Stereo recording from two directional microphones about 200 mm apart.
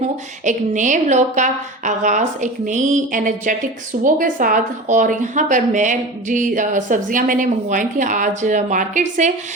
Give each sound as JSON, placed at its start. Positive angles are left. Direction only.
{"t": 0.4, "sound": "a woman's voice", "side_deg": -40}